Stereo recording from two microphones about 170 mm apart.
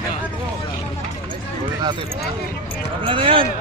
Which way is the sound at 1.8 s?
30° right (ahead or behind).